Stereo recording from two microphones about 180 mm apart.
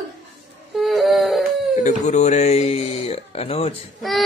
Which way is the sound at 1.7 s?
40° left (ahead or behind).